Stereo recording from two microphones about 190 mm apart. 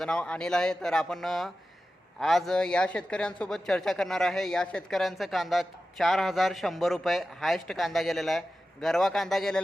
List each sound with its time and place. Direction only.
0.0 s speech: 5° left (ahead or behind)